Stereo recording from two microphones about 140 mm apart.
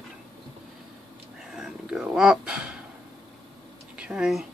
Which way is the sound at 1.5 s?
5° right (ahead or behind).